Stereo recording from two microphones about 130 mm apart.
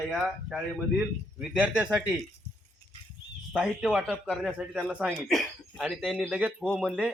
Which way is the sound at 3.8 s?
5° right (ahead or behind).